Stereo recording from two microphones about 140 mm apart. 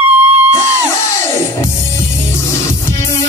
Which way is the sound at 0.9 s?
20° left (ahead or behind).